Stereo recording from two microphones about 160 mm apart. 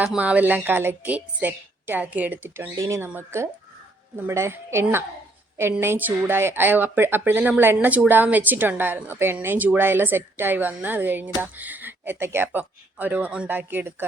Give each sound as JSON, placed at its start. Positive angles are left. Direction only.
{"t": 0.0, "sound": "speech", "side_deg": -10}